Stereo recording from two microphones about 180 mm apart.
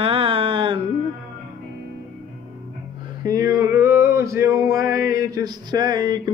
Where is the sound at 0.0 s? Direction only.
30° right (ahead or behind).